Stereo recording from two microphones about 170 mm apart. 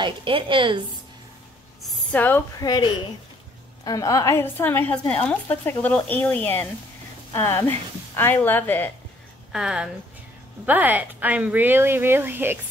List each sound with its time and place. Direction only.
0.0 s a woman's voice: 30° right (ahead or behind)
2.1 s a woman's voice: 10° left (ahead or behind)
2.6 s a woman's voice: 25° left (ahead or behind)
9.5 s a woman's voice: 5° right (ahead or behind)